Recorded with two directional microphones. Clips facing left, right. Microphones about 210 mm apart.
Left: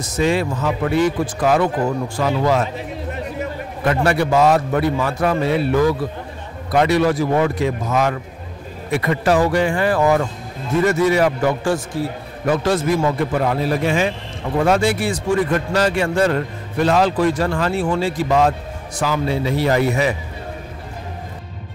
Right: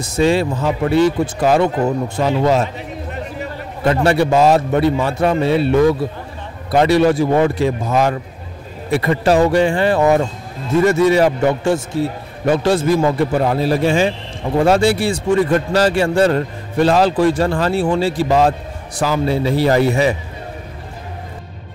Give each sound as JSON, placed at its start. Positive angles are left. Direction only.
{"t": 0.0, "sound": "a man's voice", "side_deg": -30}
{"t": 3.8, "sound": "a man's voice", "side_deg": -25}